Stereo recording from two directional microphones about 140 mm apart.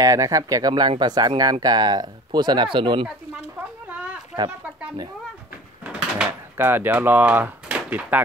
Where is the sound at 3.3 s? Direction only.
10° right (ahead or behind).